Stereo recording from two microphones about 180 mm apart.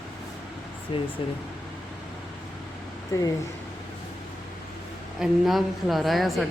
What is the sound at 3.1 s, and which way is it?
Speech, 15° left (ahead or behind).